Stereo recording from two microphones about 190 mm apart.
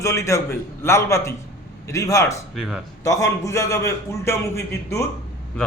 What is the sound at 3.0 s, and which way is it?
A man's voice, 15° left (ahead or behind).